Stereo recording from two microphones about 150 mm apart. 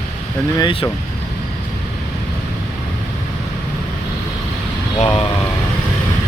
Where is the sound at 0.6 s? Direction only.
25° left (ahead or behind).